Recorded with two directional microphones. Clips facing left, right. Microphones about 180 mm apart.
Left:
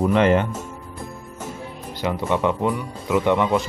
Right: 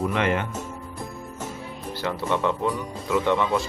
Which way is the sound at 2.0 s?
15° left (ahead or behind).